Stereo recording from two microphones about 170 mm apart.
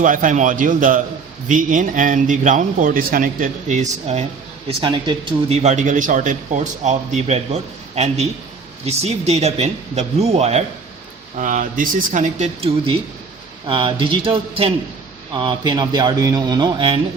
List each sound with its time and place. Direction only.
0.0 s a man's voice: 50° right (ahead or behind)
4.8 s a man's voice: 25° right (ahead or behind)
5.6 s a man's voice: 45° right (ahead or behind)
11.3 s a man's voice: 50° right (ahead or behind); by 17.0 s 30° right (ahead or behind)